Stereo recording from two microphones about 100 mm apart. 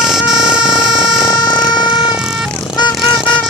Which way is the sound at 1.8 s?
50° left (ahead or behind).